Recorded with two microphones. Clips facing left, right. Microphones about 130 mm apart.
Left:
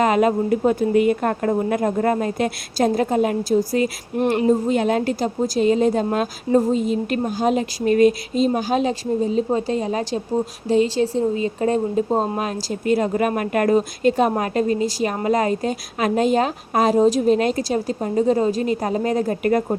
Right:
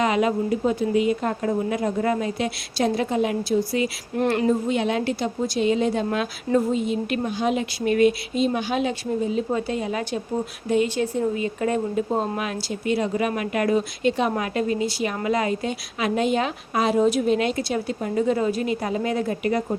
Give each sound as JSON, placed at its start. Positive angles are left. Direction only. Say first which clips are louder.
{"t": 0.0, "sound": "a woman's voice", "louder": "left 4 dB", "side_deg": 45}
{"t": 4.2, "sound": "a woman's voice", "louder": "left 2 dB", "side_deg": 20}
{"t": 4.4, "sound": "speech", "louder": "left 4 dB", "side_deg": 40}
{"t": 12.6, "sound": "speech", "louder": "left 5 dB", "side_deg": 45}